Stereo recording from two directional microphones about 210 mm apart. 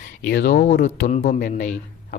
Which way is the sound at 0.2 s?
50° left (ahead or behind).